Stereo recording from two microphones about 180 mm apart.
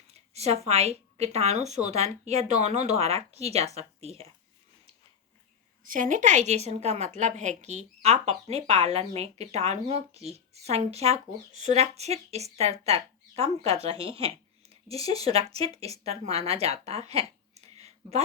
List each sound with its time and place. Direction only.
0.1 s a woman's voice: 35° right (ahead or behind)
5.8 s a woman's voice: 45° right (ahead or behind)